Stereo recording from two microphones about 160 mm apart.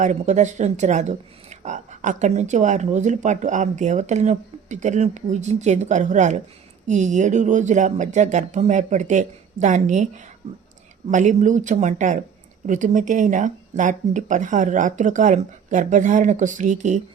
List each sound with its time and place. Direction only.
0.0 s speech: 50° right (ahead or behind)